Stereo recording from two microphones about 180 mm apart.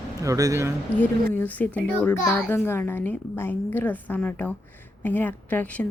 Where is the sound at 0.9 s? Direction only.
10° left (ahead or behind).